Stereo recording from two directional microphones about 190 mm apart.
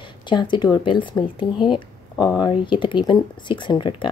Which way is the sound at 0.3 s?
25° left (ahead or behind).